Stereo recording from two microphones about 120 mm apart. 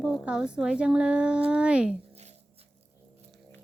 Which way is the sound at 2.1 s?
60° right (ahead or behind).